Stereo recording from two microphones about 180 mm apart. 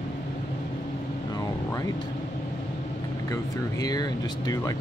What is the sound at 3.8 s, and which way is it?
Speech, 20° left (ahead or behind).